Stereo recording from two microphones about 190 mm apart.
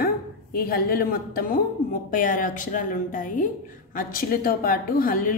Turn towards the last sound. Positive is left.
turn(degrees=45)  # may be behind; listen again after turning